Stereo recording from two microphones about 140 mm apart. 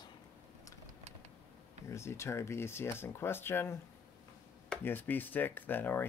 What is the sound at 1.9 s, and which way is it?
Speech, 20° left (ahead or behind).